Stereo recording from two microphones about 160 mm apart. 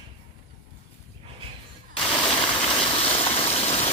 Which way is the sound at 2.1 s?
35° left (ahead or behind).